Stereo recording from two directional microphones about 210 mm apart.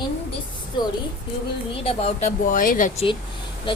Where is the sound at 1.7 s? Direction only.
30° left (ahead or behind).